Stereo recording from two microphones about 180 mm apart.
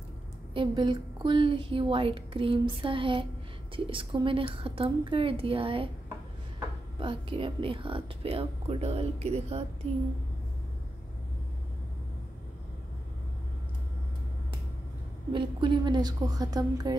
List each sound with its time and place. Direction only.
0.6 s a woman's voice: 25° right (ahead or behind)
7.0 s a woman's voice: 30° right (ahead or behind)
15.3 s a woman's voice: 25° right (ahead or behind)